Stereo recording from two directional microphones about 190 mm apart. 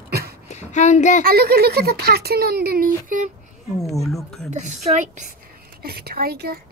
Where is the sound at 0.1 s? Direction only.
55° right (ahead or behind).